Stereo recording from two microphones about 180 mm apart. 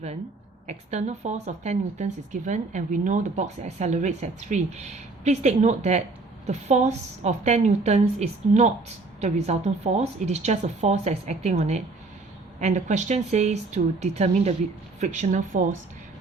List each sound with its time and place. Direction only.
0.7 s speech: 40° right (ahead or behind)